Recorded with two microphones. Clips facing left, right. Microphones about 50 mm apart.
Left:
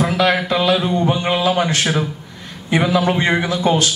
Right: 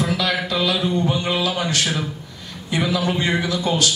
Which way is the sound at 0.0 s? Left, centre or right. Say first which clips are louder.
Left 5 dB; left.